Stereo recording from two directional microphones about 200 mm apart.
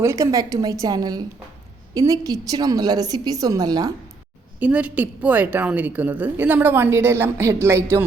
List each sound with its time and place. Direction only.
0.0 s a woman's voice: 15° right (ahead or behind)
4.6 s a woman's voice: 5° right (ahead or behind)